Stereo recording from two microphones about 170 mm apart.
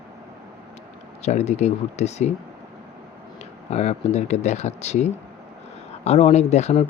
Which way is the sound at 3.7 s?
40° left (ahead or behind).